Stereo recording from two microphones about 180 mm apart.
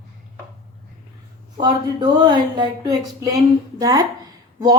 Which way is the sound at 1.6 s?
25° right (ahead or behind).